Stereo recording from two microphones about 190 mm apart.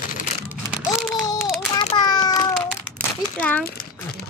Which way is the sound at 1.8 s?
25° left (ahead or behind).